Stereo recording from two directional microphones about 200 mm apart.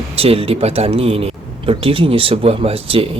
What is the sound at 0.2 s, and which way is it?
A man's voice, 30° right (ahead or behind).